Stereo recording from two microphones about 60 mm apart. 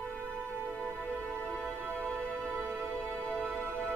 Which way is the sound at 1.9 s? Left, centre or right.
Left.